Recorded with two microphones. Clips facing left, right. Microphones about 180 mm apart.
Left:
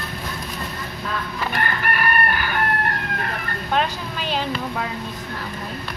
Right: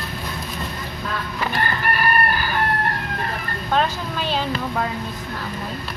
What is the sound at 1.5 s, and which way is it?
Chicken, 30° right (ahead or behind).